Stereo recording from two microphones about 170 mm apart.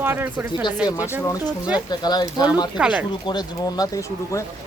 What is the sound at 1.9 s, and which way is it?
Speech, 25° left (ahead or behind).